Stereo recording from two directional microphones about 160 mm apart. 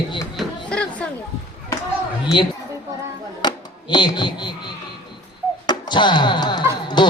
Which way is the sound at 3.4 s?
30° left (ahead or behind).